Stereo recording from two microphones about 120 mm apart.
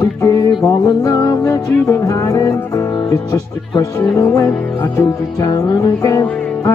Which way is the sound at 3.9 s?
20° left (ahead or behind).